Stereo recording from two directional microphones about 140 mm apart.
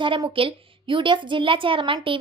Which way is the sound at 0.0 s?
35° right (ahead or behind).